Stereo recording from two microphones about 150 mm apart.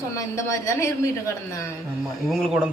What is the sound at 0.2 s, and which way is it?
Speech, 20° left (ahead or behind).